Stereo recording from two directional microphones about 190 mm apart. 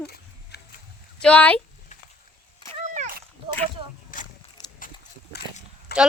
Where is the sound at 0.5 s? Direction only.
60° left (ahead or behind).